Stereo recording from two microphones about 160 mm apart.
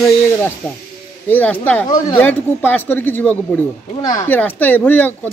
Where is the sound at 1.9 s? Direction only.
25° left (ahead or behind).